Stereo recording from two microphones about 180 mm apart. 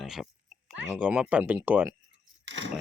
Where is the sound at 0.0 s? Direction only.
Centre (ahead or behind).